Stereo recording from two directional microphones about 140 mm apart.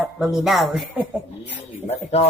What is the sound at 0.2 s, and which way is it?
Speech, centre (ahead or behind).